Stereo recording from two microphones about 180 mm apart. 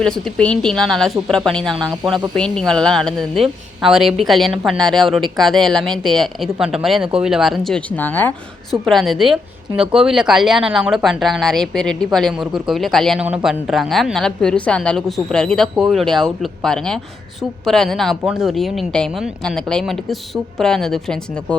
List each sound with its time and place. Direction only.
0.0 s a woman's voice: 5° left (ahead or behind)